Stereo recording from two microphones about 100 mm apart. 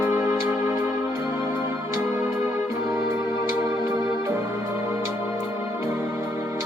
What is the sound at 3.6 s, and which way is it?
Organ, 35° right (ahead or behind).